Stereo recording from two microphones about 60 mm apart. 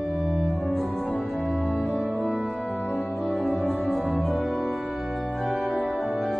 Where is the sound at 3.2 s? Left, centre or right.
Left.